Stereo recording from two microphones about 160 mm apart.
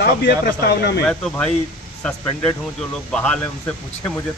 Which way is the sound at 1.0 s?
10° left (ahead or behind).